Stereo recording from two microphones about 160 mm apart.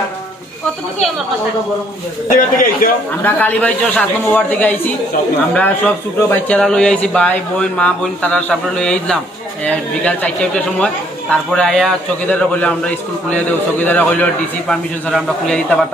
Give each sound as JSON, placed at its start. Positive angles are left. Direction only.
{"t": 2.3, "sound": "a man's voice", "side_deg": 60}
{"t": 3.3, "sound": "speech", "side_deg": 10}
{"t": 6.1, "sound": "a man's voice", "side_deg": 10}